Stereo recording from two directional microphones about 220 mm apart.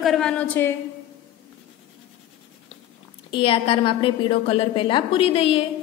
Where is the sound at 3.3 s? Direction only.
25° left (ahead or behind).